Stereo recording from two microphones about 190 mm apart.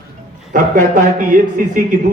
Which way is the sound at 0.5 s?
45° right (ahead or behind).